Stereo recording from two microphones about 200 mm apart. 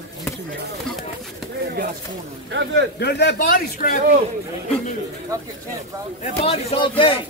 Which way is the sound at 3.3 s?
40° left (ahead or behind).